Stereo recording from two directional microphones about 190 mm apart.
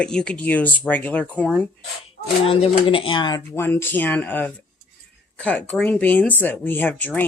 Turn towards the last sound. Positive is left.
turn(degrees=10)  # may be behind; listen again after turning